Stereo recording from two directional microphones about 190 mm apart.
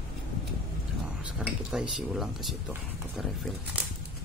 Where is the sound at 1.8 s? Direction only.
5° right (ahead or behind).